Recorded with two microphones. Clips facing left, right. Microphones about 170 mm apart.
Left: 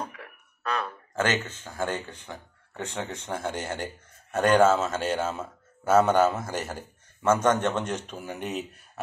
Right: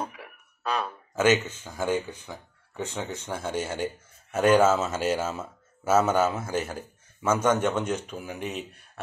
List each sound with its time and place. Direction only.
0.8 s a man's voice: 10° right (ahead or behind)